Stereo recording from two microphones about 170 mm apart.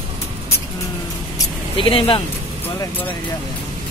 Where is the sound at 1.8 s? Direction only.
30° left (ahead or behind).